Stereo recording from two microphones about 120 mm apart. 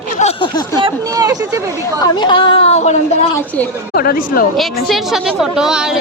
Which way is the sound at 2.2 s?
40° left (ahead or behind).